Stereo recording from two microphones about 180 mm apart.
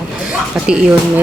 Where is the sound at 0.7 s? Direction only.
5° right (ahead or behind).